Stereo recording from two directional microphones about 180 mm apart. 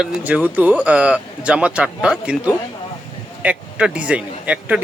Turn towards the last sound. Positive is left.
turn(degrees=-5)  # may be behind; listen again after turning